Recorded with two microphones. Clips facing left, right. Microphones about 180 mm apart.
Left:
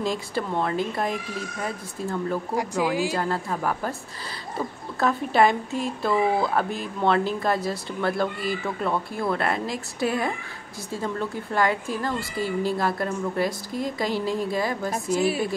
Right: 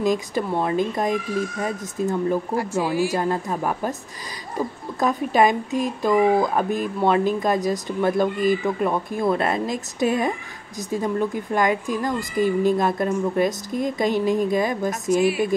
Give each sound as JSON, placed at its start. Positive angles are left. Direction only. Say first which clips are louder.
{"t": 0.0, "sound": "a woman's voice", "louder": "right 5 dB", "side_deg": -15}
{"t": 2.5, "sound": "speech", "louder": "right 2 dB", "side_deg": 15}
{"t": 3.1, "sound": "a woman's voice", "louder": "right 3 dB", "side_deg": -20}